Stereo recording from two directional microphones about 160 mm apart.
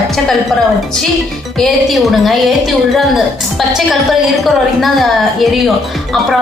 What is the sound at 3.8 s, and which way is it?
A woman's voice, centre (ahead or behind).